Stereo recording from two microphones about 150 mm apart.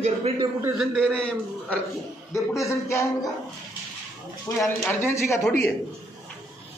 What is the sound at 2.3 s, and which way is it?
Speech, 20° left (ahead or behind).